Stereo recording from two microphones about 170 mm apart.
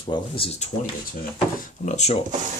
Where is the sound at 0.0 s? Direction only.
30° left (ahead or behind).